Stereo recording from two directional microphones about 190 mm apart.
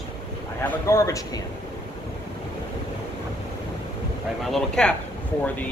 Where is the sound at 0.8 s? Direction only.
15° left (ahead or behind).